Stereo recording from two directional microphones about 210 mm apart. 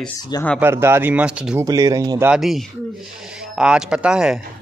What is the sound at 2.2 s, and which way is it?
Speech, centre (ahead or behind).